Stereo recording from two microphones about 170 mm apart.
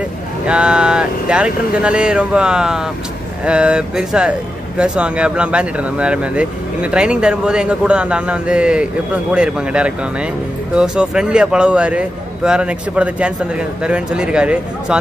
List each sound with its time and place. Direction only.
0.5 s a man's voice: 5° right (ahead or behind)